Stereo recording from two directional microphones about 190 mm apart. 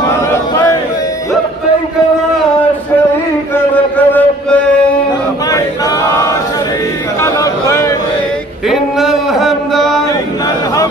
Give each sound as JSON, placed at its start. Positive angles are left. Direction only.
{"t": 3.5, "sound": "music", "side_deg": 10}
{"t": 5.5, "sound": "choir", "side_deg": 20}
{"t": 7.2, "sound": "chatter", "side_deg": 15}
{"t": 8.6, "sound": "a sound", "side_deg": 0}